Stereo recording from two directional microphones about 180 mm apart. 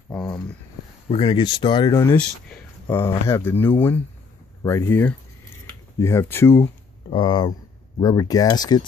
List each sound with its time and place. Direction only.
1.0 s speech: 30° left (ahead or behind)
2.1 s speech: 10° left (ahead or behind)
7.1 s speech: 25° left (ahead or behind)